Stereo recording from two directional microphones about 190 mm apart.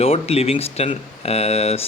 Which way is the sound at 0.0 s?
30° left (ahead or behind).